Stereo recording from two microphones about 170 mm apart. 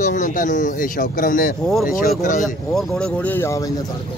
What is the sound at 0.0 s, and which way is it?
Speech, 50° left (ahead or behind).